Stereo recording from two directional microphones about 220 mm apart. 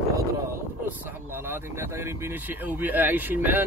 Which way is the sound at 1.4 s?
10° right (ahead or behind).